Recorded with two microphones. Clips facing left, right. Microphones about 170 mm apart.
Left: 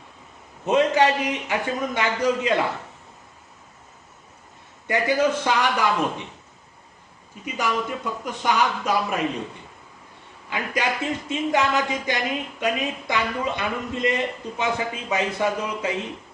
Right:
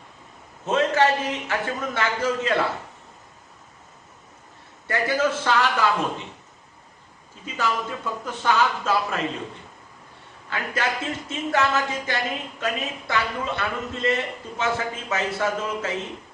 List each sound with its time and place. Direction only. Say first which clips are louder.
0.6 s speech: left 2 dB; 15° left (ahead or behind)
4.9 s speech: left 2 dB; 15° left (ahead or behind)
7.4 s speech: left 1 dB; 15° left (ahead or behind)
10.5 s speech: left 1 dB; 15° left (ahead or behind)